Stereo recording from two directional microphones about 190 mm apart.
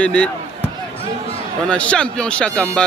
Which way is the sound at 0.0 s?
5° left (ahead or behind).